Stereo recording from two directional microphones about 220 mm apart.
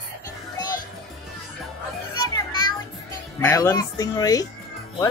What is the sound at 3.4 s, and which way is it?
Speech, 15° left (ahead or behind).